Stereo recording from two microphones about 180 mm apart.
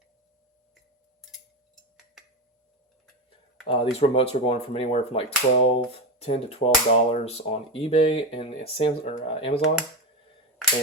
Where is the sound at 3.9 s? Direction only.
30° left (ahead or behind).